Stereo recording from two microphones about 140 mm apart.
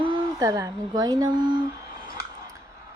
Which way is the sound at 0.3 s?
25° right (ahead or behind).